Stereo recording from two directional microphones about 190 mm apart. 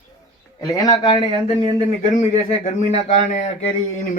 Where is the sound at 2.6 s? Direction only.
35° left (ahead or behind).